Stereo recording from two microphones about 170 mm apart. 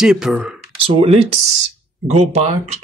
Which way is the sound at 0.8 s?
35° right (ahead or behind).